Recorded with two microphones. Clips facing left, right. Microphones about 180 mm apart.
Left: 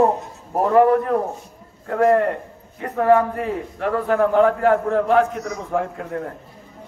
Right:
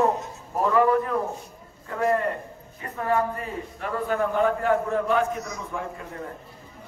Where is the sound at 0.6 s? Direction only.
55° left (ahead or behind).